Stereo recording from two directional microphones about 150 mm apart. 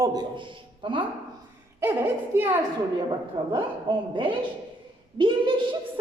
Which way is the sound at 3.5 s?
35° right (ahead or behind).